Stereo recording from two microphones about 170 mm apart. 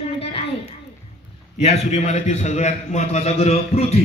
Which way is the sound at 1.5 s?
40° left (ahead or behind).